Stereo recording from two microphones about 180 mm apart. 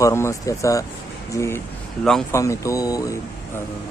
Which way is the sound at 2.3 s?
15° left (ahead or behind).